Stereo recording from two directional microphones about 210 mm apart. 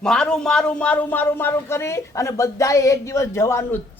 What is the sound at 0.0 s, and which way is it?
Speech, 5° left (ahead or behind).